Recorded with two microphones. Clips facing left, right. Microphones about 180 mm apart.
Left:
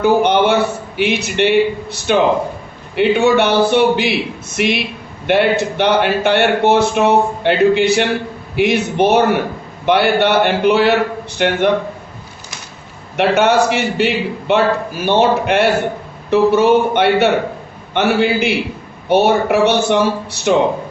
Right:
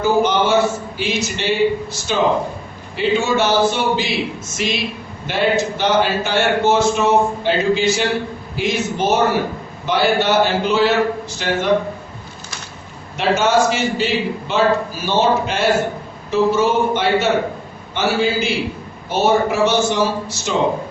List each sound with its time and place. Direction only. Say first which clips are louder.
0.0 s a man's voice: left 4 dB; 60° left (ahead or behind)
13.1 s a man's voice: left 3 dB; 65° left (ahead or behind)